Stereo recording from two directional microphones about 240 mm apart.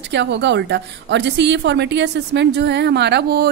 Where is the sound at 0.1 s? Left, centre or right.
Right.